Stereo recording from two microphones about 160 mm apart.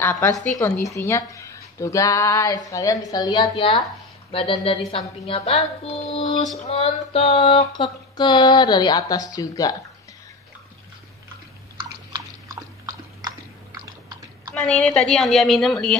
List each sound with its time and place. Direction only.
0.0 s a woman's voice: 15° left (ahead or behind)
14.5 s a woman's voice: 5° left (ahead or behind)